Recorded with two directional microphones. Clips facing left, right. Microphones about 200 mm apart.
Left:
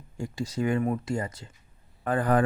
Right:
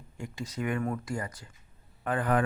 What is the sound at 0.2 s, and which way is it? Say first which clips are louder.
Speech: left 6 dB; 30° left (ahead or behind).